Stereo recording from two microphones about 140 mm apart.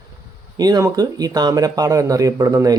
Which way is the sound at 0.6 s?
25° right (ahead or behind).